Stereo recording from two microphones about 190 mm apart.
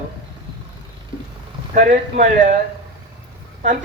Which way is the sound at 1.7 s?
45° right (ahead or behind).